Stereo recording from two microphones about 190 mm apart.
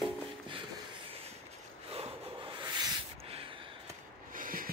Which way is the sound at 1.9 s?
30° right (ahead or behind).